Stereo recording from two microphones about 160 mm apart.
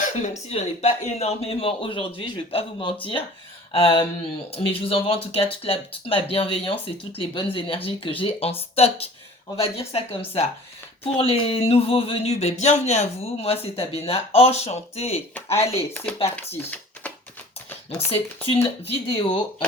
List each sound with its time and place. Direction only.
0.0 s speech: 45° left (ahead or behind)
16.6 s a sound: 10° left (ahead or behind)
18.1 s speech: 35° left (ahead or behind)